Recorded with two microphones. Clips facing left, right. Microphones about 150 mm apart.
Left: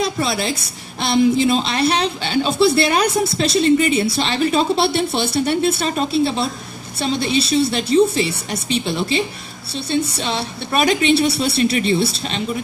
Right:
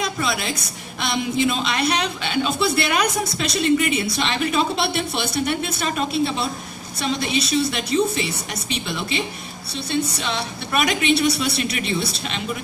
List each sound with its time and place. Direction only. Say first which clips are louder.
0.0 s a man's voice: left 4 dB; 35° left (ahead or behind)